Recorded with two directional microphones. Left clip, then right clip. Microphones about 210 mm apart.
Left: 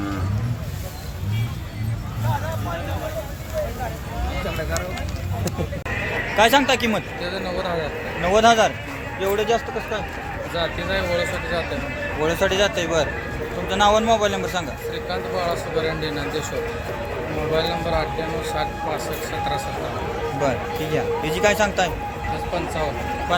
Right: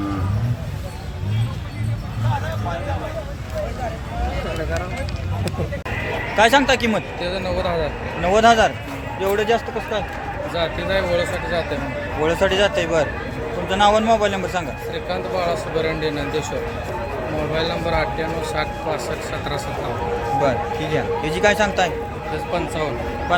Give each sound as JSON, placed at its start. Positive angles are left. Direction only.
{"t": 6.3, "sound": "speech", "side_deg": 0}
{"t": 7.2, "sound": "speech", "side_deg": -20}
{"t": 8.2, "sound": "speech", "side_deg": 0}
{"t": 10.5, "sound": "speech", "side_deg": -25}
{"t": 12.2, "sound": "speech", "side_deg": 0}
{"t": 14.9, "sound": "speech", "side_deg": -25}
{"t": 17.5, "sound": "speech", "side_deg": -25}
{"t": 20.4, "sound": "speech", "side_deg": 0}